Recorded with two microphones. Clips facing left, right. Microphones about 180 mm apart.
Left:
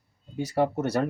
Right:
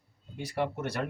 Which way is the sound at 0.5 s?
40° left (ahead or behind).